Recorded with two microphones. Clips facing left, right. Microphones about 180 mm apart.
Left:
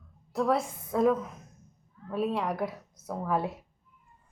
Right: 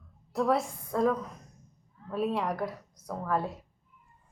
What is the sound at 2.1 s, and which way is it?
A woman's voice, centre (ahead or behind).